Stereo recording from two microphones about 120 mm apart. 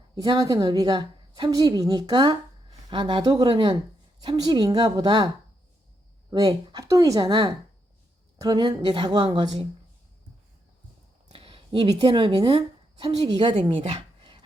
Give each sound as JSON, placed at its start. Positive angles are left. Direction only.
{"t": 0.2, "sound": "a woman's voice", "side_deg": -35}
{"t": 6.3, "sound": "a woman's voice", "side_deg": -30}
{"t": 11.3, "sound": "speech", "side_deg": -50}